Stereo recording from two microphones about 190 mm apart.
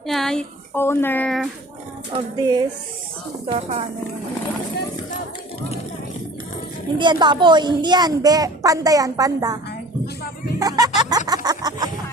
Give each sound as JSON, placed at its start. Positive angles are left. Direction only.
{"t": 0.1, "sound": "speech", "side_deg": 0}
{"t": 2.1, "sound": "a woman's voice", "side_deg": -20}
{"t": 3.5, "sound": "speech", "side_deg": -35}
{"t": 7.0, "sound": "a woman's voice", "side_deg": -25}
{"t": 10.6, "sound": "a woman's voice", "side_deg": -20}
{"t": 11.3, "sound": "a sound", "side_deg": -20}